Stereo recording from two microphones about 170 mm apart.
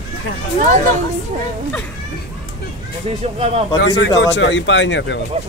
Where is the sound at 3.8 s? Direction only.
90° left.